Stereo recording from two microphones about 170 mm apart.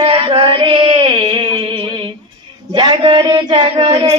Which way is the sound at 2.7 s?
30° right (ahead or behind).